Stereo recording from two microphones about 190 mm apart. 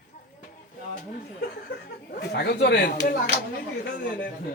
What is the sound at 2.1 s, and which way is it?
Speech, 60° left (ahead or behind).